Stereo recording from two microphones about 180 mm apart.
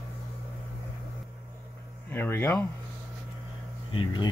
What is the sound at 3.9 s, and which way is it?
Speech, 25° left (ahead or behind).